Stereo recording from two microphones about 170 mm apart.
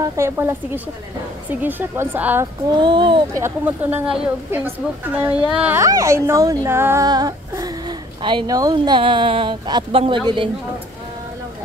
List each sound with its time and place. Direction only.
0.0 s a woman's voice: 15° right (ahead or behind)
2.8 s speech: 30° right (ahead or behind)
3.4 s a woman's voice: 10° right (ahead or behind); by 10.5 s 30° right (ahead or behind)